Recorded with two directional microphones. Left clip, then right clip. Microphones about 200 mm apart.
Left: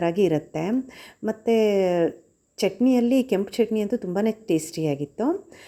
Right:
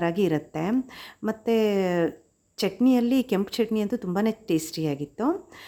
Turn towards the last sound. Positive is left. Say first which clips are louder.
# left 2 dB
turn(degrees=0)  # may be behind; listen again after turning